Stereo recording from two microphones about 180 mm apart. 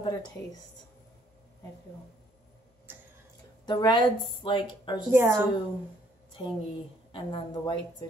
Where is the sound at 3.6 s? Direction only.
25° left (ahead or behind).